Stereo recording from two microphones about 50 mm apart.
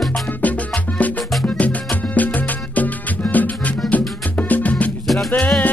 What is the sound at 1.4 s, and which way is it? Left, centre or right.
Music, left.